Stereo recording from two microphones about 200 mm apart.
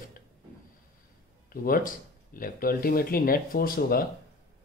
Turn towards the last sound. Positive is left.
turn(degrees=45)  # may be behind; listen again after turning